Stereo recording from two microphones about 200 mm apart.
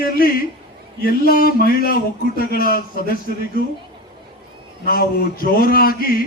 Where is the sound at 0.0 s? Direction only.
45° left (ahead or behind).